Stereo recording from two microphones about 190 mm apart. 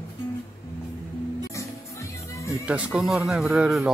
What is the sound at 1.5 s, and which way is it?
Music, 15° left (ahead or behind).